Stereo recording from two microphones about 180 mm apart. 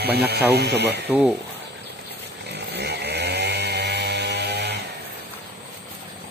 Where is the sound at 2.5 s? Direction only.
70° right (ahead or behind).